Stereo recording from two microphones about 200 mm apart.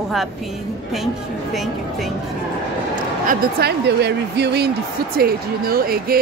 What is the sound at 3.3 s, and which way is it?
Speech, 50° right (ahead or behind).